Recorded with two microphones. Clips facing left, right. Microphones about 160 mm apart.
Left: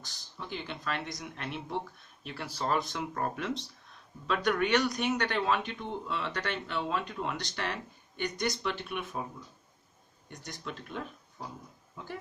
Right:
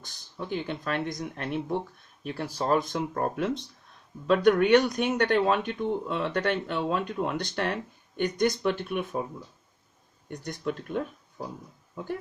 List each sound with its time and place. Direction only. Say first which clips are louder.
0.0 s speech: right 6 dB; 50° right (ahead or behind)
10.2 s speech: right 10 dB; 55° right (ahead or behind)